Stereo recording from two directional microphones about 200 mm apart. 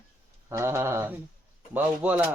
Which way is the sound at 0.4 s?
15° right (ahead or behind).